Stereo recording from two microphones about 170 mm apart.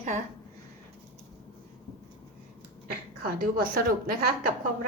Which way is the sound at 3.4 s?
60° right (ahead or behind).